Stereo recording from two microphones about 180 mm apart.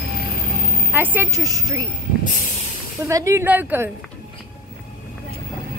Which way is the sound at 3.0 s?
15° right (ahead or behind).